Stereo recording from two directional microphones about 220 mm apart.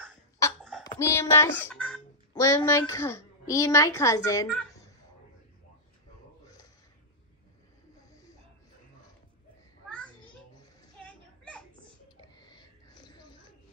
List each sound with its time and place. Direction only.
0.8 s a child's voice: 10° left (ahead or behind)
11.1 s children playing: 5° left (ahead or behind)
12.2 s a sound: 20° left (ahead or behind)